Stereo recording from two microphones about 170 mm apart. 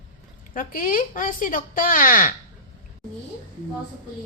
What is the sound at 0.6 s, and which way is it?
Speech, 55° left (ahead or behind).